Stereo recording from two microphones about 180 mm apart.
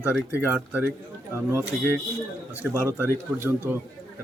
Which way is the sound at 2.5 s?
10° right (ahead or behind).